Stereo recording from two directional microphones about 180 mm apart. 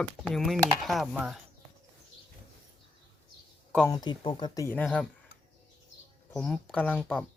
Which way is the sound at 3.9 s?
25° left (ahead or behind).